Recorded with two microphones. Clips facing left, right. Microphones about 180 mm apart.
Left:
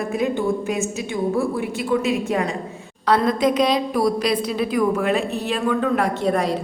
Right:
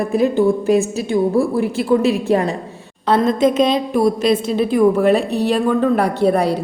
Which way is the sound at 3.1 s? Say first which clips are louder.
Right 3 dB; 25° right (ahead or behind).